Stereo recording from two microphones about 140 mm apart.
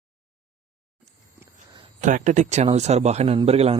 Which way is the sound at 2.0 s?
65° right (ahead or behind).